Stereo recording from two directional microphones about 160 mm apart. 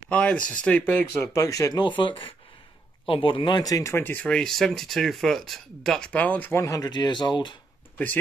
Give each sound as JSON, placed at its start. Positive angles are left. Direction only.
{"t": 0.1, "sound": "speech", "side_deg": 5}
{"t": 6.6, "sound": "speech", "side_deg": 20}